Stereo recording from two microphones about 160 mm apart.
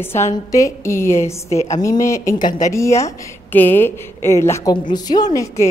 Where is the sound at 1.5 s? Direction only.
45° left (ahead or behind).